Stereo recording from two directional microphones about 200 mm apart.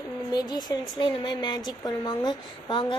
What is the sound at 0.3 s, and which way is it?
A woman's voice, 20° left (ahead or behind).